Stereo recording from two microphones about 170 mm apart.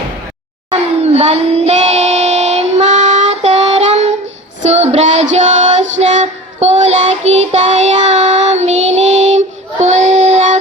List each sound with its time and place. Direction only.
0.7 s child singing: 40° right (ahead or behind)
4.7 s music: 40° right (ahead or behind)
6.0 s child singing: 40° right (ahead or behind)